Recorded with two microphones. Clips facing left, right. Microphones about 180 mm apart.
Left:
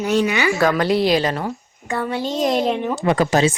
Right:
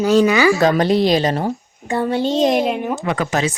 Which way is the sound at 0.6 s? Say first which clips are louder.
Right 2 dB; 25° right (ahead or behind).